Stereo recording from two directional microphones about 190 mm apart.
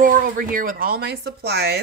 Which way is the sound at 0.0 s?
45° right (ahead or behind).